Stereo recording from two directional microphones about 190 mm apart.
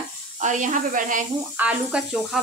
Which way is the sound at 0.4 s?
40° right (ahead or behind).